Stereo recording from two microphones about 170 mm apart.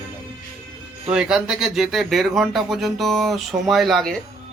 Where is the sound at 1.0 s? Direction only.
5° right (ahead or behind).